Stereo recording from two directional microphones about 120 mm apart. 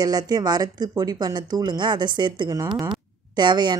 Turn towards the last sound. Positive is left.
turn(degrees=-35)  # may be behind; listen again after turning